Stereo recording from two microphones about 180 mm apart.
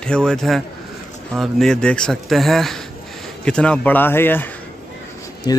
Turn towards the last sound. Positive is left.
turn(degrees=20)  # may be behind; listen again after turning